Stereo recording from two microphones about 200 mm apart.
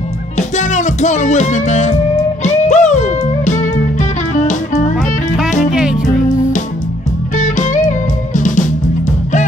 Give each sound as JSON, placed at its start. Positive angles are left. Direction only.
{"t": 0.4, "sound": "music", "side_deg": 35}
{"t": 5.7, "sound": "music", "side_deg": -5}
{"t": 7.3, "sound": "music", "side_deg": 40}